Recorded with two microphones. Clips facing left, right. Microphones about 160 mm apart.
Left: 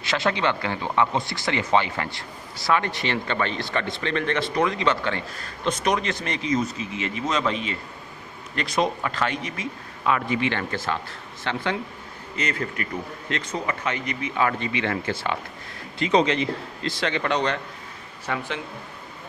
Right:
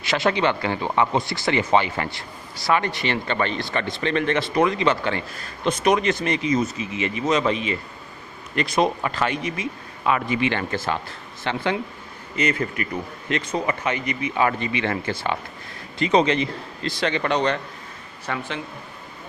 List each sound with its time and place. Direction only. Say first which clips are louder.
0.0 s a man's voice: right 3 dB; 5° right (ahead or behind)